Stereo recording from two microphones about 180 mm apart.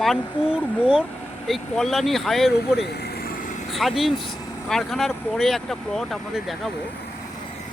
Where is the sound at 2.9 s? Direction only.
60° left (ahead or behind).